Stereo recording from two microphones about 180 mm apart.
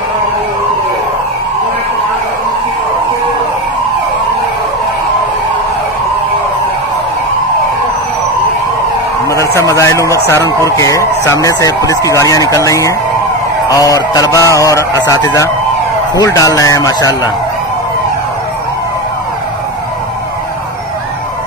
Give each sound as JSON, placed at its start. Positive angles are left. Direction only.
{"t": 9.6, "sound": "a man's voice", "side_deg": 15}